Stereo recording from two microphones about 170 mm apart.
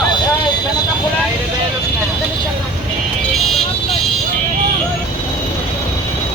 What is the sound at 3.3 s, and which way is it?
Vehicle, centre (ahead or behind).